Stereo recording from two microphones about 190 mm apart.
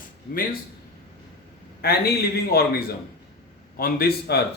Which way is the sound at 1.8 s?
55° left (ahead or behind).